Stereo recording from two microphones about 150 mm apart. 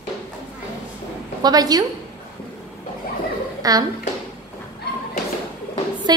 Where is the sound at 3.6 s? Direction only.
25° right (ahead or behind).